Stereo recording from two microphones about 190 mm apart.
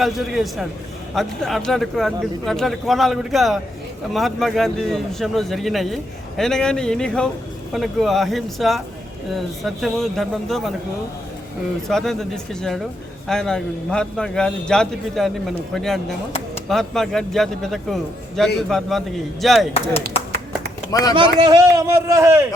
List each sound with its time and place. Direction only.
0.0 s a man's voice: centre (ahead or behind)
11.9 s a man's voice: centre (ahead or behind)
21.2 s a man's voice: 25° right (ahead or behind)